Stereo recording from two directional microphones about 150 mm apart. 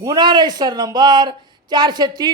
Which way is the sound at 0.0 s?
25° right (ahead or behind).